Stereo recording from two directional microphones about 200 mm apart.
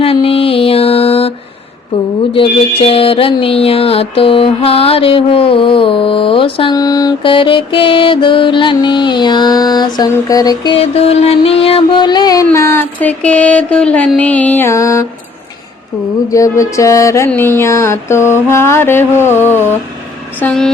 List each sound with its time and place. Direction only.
0.0 s mantra: 30° left (ahead or behind)
2.3 s music: 25° left (ahead or behind)
16.3 s music: 15° left (ahead or behind)
20.4 s a woman's voice: 5° left (ahead or behind)